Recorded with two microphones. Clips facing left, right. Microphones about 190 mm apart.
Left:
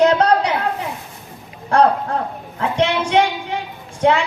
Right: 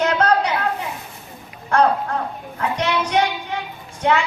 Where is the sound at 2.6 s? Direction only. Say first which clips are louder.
Left 3 dB; 30° left (ahead or behind).